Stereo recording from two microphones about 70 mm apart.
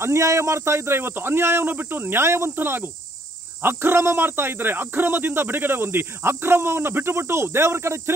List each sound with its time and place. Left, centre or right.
0.0 s speech: right